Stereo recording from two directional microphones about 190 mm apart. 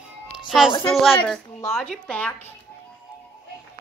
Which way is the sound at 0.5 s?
5° right (ahead or behind).